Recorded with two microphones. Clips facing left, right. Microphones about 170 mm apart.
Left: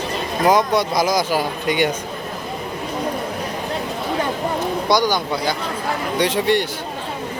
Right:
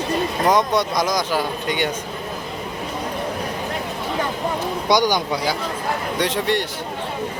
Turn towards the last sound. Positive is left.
turn(degrees=0)  # may be behind; listen again after turning